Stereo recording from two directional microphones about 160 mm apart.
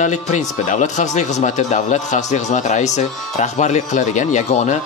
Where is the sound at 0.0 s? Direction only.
50° left (ahead or behind).